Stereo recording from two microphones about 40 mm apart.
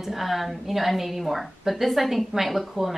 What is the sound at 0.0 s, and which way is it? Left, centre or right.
A woman's voice, centre.